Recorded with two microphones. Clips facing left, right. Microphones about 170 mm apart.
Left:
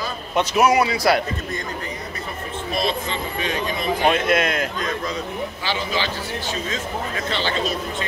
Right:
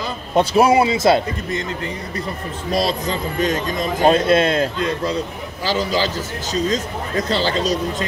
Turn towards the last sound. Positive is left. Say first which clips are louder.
# right 4 dB
turn(degrees=-40)  # may be behind; listen again after turning